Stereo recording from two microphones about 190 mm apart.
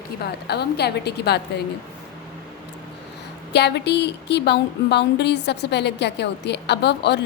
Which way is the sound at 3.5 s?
60° left (ahead or behind).